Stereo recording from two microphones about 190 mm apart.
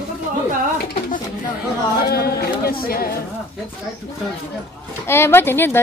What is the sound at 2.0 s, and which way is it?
Speech, 55° left (ahead or behind).